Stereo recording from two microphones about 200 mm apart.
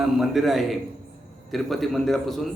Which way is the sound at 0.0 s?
Centre (ahead or behind).